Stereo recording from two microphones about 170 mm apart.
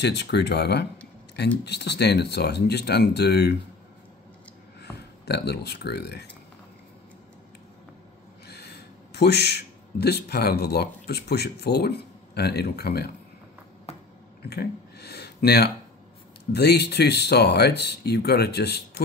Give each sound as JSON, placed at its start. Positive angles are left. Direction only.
{"t": 0.0, "sound": "speech", "side_deg": 85}
{"t": 4.9, "sound": "speech", "side_deg": 75}
{"t": 8.5, "sound": "a man's voice", "side_deg": 70}
{"t": 14.5, "sound": "speech", "side_deg": 70}